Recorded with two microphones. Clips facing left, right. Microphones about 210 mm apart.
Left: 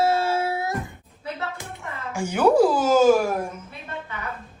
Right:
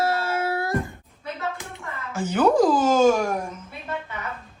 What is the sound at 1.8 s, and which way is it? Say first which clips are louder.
A woman's voice: even; 15° left (ahead or behind).